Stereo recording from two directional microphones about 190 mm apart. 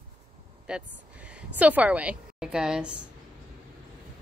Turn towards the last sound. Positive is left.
turn(degrees=-5)  # may be behind; listen again after turning